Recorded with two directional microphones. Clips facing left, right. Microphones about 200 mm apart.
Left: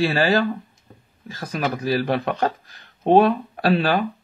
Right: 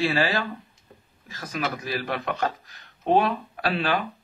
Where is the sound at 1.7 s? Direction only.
35° left (ahead or behind).